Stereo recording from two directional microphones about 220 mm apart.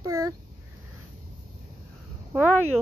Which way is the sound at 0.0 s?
15° right (ahead or behind).